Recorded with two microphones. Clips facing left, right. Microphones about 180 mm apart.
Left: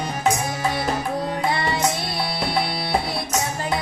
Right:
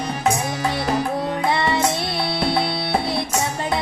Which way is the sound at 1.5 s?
25° right (ahead or behind).